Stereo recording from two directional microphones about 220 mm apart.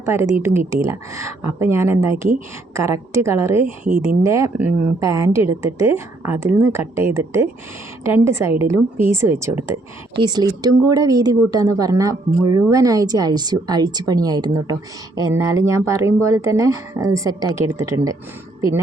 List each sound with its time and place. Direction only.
0.0 s speech: 10° right (ahead or behind)